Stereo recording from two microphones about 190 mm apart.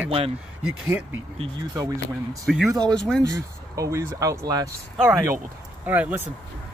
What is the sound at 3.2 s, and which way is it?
Speech, 15° right (ahead or behind).